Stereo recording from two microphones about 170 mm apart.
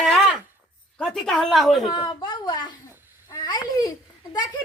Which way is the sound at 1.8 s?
25° left (ahead or behind).